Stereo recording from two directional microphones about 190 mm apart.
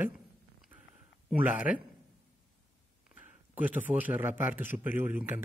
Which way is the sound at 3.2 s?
10° right (ahead or behind).